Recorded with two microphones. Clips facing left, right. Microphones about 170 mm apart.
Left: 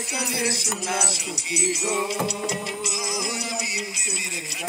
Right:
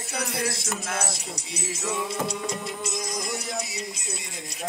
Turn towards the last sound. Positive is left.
turn(degrees=80)